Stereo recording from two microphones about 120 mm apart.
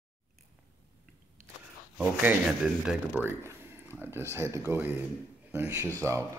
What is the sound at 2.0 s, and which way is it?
A man's voice, 10° right (ahead or behind).